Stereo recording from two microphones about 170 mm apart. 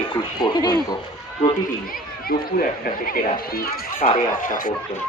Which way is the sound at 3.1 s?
60° left (ahead or behind).